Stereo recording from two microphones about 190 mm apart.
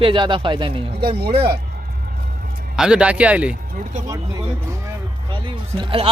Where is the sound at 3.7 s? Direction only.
45° right (ahead or behind).